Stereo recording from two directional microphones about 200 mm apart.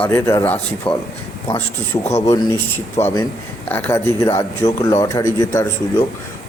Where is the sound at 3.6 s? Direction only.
10° left (ahead or behind).